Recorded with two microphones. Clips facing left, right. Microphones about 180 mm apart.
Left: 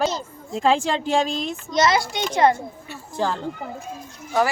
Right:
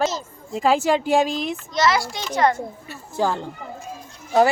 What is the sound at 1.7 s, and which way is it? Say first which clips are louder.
Speech: left 1 dB; 20° left (ahead or behind).